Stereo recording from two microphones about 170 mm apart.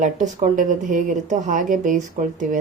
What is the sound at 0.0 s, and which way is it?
A woman's voice, 45° right (ahead or behind).